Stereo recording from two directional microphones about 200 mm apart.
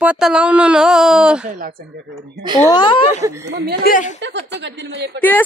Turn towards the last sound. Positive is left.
turn(degrees=-55)  # may be behind; listen again after turning